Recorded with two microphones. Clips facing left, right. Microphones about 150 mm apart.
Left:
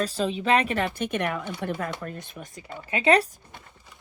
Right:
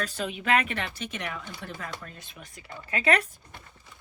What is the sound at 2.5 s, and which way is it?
Speech, 20° left (ahead or behind).